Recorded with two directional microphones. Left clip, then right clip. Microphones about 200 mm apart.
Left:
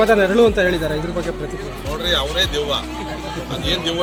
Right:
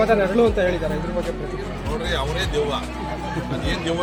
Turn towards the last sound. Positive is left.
turn(degrees=-15)  # may be behind; listen again after turning